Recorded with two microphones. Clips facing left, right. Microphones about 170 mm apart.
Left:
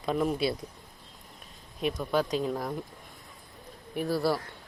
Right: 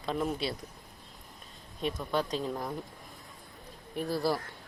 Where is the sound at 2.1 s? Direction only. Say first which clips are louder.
Left 4 dB; 5° left (ahead or behind).